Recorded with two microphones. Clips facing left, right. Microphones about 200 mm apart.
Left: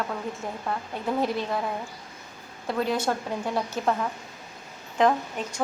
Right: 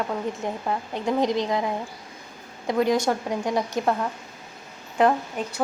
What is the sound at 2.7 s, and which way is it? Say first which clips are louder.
A woman's voice: right 4 dB; 10° right (ahead or behind).